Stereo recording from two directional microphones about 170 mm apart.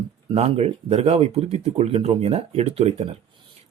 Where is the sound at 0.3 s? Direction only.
35° right (ahead or behind).